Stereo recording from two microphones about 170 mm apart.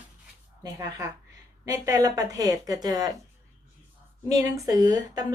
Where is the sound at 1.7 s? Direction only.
20° right (ahead or behind).